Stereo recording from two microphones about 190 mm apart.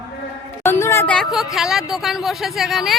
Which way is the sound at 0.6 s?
15° left (ahead or behind).